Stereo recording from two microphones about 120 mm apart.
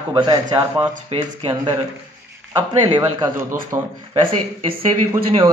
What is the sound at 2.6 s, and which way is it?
Speech, 35° right (ahead or behind).